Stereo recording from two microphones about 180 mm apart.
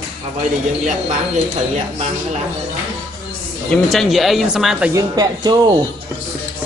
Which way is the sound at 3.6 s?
Centre (ahead or behind).